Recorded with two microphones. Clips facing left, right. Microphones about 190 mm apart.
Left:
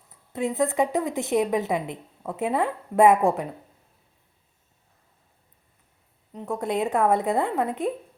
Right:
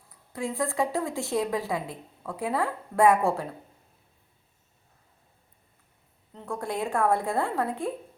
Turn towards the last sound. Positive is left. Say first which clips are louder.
# left 3 dB
turn(degrees=20)  # may be behind; listen again after turning